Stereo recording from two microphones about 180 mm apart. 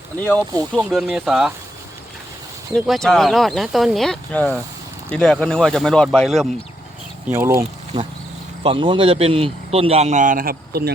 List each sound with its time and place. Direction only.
0.2 s speech: 10° left (ahead or behind)
0.8 s speech: centre (ahead or behind)
2.7 s speech: centre (ahead or behind)
7.3 s speech: 15° right (ahead or behind)
8.6 s a man's voice: 30° right (ahead or behind); by 10.9 s 60° right (ahead or behind)